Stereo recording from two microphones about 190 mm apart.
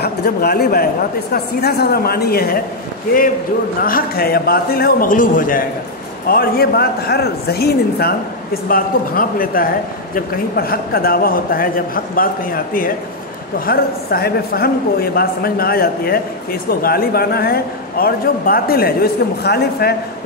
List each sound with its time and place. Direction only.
0.0 s a man's voice: 55° left (ahead or behind)
3.8 s a man's voice: 50° left (ahead or behind)
13.7 s a man's voice: 55° left (ahead or behind)